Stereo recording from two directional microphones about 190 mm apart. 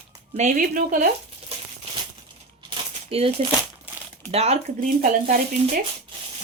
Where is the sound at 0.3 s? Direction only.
45° right (ahead or behind).